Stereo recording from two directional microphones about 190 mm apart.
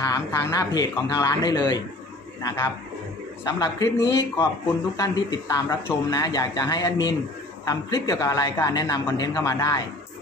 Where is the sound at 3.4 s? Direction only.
20° left (ahead or behind).